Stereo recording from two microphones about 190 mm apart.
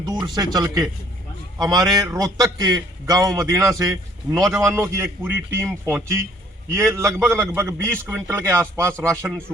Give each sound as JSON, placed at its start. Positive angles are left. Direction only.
{"t": 0.3, "sound": "a man's voice", "side_deg": -20}